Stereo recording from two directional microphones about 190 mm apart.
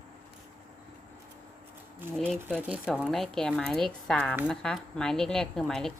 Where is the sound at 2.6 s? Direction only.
5° right (ahead or behind).